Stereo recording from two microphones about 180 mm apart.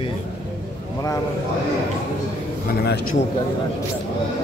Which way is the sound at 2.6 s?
65° left (ahead or behind).